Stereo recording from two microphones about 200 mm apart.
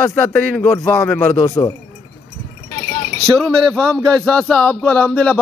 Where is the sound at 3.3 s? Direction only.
5° left (ahead or behind).